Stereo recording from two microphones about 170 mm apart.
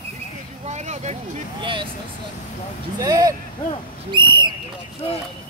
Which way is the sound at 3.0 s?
20° right (ahead or behind).